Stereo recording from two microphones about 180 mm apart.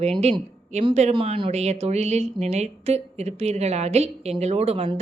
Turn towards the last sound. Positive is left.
turn(degrees=-35)  # may be behind; listen again after turning